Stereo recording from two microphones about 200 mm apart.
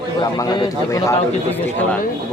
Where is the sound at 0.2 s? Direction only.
20° left (ahead or behind).